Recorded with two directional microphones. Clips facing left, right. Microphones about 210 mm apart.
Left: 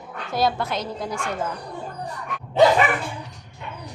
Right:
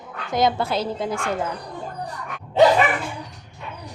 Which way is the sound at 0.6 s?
30° right (ahead or behind).